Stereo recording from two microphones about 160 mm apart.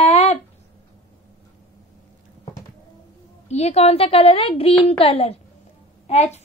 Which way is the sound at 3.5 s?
45° left (ahead or behind).